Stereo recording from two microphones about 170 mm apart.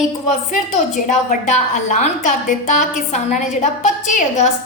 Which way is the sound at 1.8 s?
45° left (ahead or behind).